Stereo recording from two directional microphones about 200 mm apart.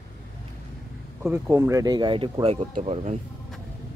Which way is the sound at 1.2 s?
15° right (ahead or behind).